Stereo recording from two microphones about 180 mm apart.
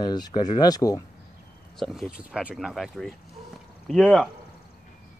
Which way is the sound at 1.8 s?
Centre (ahead or behind).